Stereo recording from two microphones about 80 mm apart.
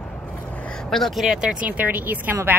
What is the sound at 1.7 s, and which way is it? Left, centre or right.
Speech, right.